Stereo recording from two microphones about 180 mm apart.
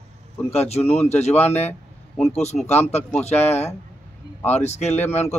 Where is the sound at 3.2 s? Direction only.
35° left (ahead or behind).